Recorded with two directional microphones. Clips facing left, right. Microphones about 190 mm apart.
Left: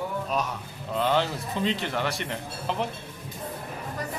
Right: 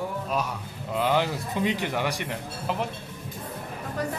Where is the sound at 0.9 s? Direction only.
10° right (ahead or behind).